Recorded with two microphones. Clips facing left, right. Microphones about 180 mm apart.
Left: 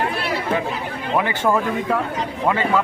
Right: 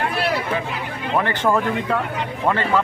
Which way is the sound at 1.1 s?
10° left (ahead or behind).